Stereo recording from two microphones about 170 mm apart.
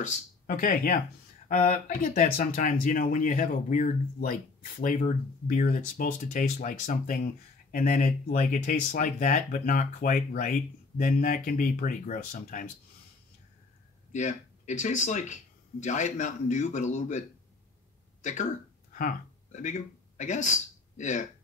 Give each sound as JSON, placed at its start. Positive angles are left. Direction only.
{"t": 0.0, "sound": "speech", "side_deg": 55}
{"t": 14.1, "sound": "speech", "side_deg": 45}
{"t": 18.2, "sound": "speech", "side_deg": 45}